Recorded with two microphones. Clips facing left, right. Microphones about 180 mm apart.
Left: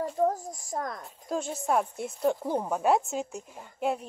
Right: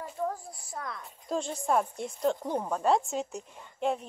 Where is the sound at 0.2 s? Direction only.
40° left (ahead or behind).